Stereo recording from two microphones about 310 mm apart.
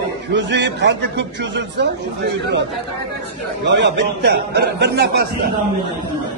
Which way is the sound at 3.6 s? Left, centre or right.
Right.